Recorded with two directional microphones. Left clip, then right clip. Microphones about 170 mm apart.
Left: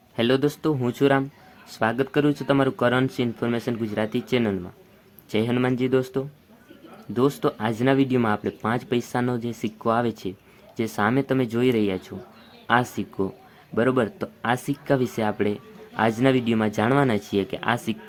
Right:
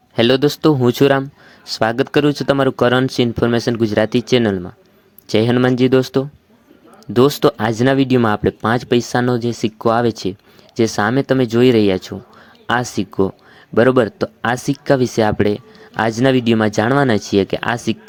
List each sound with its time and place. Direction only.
0.2 s speech: 40° right (ahead or behind)